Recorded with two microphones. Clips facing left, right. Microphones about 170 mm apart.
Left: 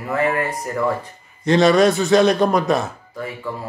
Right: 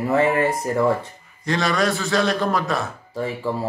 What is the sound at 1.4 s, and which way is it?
A man's voice, 20° left (ahead or behind).